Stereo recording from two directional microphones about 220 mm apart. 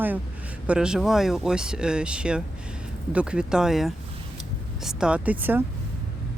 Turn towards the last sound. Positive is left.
turn(degrees=-10)  # may be behind; listen again after turning